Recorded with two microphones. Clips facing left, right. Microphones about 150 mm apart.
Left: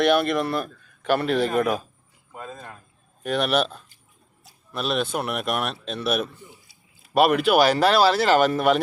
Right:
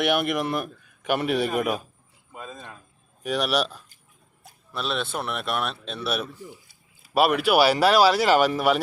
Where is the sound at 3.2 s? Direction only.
5° right (ahead or behind).